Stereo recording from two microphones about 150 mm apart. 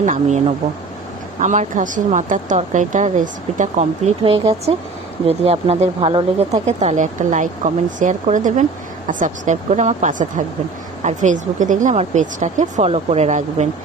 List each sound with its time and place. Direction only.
0.0 s speech: 55° right (ahead or behind)
4.2 s speech: 40° right (ahead or behind)